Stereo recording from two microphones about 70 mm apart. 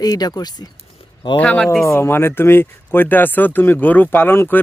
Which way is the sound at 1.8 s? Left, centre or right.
Left.